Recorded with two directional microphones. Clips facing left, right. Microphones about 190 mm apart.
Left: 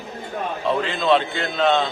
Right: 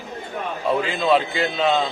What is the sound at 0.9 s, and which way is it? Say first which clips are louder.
Speech: left 1 dB; 5° right (ahead or behind).